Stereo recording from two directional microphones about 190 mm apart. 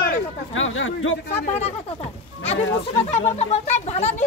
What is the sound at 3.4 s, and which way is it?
Speech, 35° left (ahead or behind).